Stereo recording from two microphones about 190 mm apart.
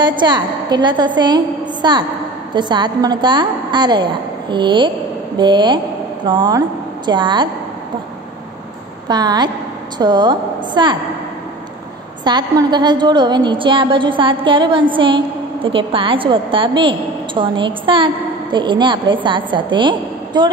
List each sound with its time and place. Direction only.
0.0 s a woman's voice: 25° right (ahead or behind)
9.0 s a woman's voice: 20° right (ahead or behind)
12.3 s a woman's voice: 20° right (ahead or behind)